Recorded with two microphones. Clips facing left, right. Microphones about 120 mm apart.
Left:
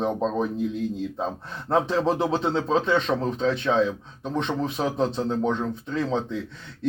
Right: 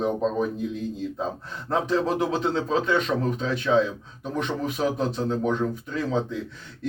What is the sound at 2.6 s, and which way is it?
Speech, 30° left (ahead or behind).